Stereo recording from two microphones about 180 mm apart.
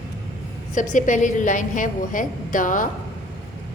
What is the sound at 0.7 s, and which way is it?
A woman's voice, 45° left (ahead or behind).